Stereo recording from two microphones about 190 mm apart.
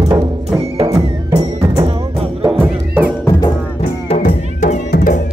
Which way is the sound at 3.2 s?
25° left (ahead or behind).